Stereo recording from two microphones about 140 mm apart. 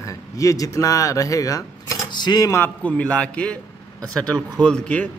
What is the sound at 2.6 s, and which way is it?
Speech, 10° left (ahead or behind).